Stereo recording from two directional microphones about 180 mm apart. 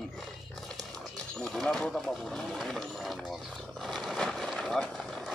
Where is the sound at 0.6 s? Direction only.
Centre (ahead or behind).